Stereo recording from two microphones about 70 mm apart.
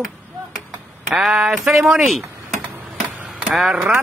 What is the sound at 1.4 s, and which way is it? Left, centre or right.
Mantra, centre.